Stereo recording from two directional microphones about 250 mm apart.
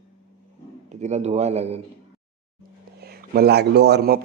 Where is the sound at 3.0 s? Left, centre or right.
Right.